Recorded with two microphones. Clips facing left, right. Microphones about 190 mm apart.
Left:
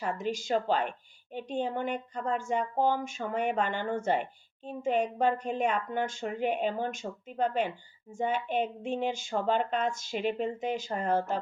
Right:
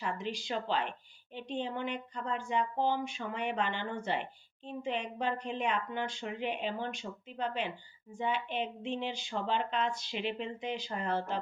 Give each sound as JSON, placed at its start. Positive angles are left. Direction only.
{"t": 0.0, "sound": "a woman's voice", "side_deg": 45}